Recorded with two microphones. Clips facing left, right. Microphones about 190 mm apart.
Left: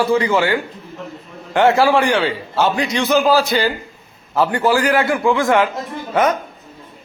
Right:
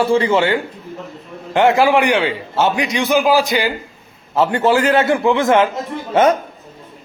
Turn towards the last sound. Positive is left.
turn(degrees=-25)  # may be behind; listen again after turning